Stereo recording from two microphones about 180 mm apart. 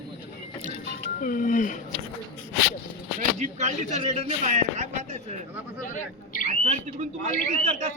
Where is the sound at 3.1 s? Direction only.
40° right (ahead or behind).